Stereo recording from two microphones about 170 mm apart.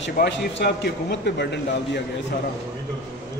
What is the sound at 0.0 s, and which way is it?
A man's voice, 85° left.